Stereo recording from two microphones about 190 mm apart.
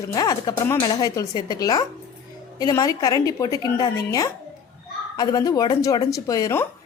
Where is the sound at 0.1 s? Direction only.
20° left (ahead or behind).